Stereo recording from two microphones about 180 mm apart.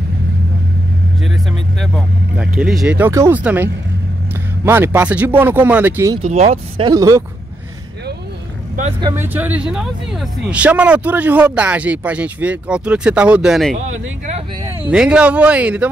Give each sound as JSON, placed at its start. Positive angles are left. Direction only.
{"t": 1.8, "sound": "speech", "side_deg": 0}
{"t": 6.2, "sound": "speech", "side_deg": -35}
{"t": 6.9, "sound": "speech", "side_deg": -20}
{"t": 9.0, "sound": "speech", "side_deg": -15}
{"t": 14.9, "sound": "speech", "side_deg": -5}